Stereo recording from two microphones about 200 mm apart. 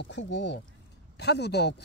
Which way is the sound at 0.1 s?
60° left (ahead or behind).